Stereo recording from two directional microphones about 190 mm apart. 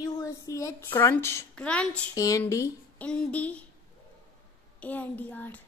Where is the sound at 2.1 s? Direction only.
20° left (ahead or behind).